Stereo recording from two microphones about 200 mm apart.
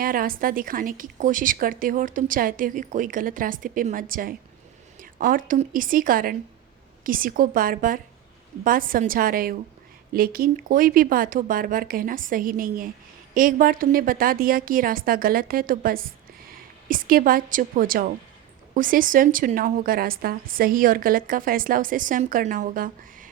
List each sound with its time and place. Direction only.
0.0 s a woman's voice: 45° right (ahead or behind)